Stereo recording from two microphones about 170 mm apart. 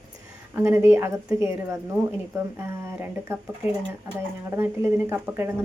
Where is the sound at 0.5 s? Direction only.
15° right (ahead or behind).